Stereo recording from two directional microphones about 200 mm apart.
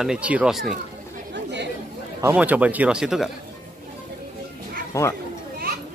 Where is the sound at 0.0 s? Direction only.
5° right (ahead or behind).